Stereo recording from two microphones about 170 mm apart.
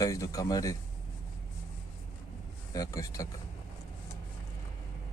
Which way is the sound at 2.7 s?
20° left (ahead or behind).